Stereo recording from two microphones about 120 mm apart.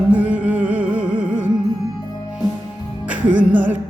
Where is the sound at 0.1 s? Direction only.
10° right (ahead or behind).